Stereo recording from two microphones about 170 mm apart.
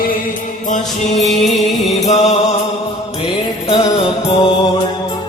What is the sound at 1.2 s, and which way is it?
Music, centre (ahead or behind).